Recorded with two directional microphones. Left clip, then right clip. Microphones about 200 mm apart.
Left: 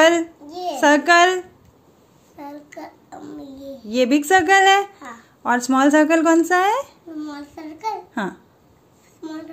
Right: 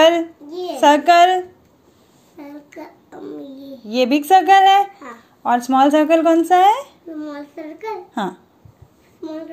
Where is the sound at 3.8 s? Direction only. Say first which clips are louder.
Right 2 dB; 5° left (ahead or behind).